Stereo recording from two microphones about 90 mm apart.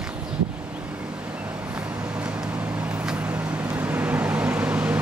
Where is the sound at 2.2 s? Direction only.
15° right (ahead or behind).